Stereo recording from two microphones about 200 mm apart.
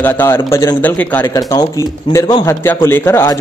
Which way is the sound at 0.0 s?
10° left (ahead or behind).